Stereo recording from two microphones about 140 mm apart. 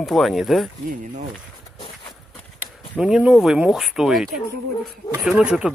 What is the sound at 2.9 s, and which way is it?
Speech, 5° right (ahead or behind).